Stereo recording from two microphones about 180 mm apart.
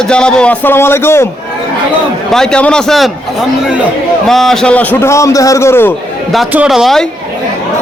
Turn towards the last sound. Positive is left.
turn(degrees=0)  # may be behind; listen again after turning